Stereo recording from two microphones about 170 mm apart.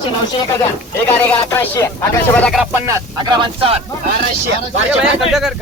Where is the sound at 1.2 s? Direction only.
10° left (ahead or behind).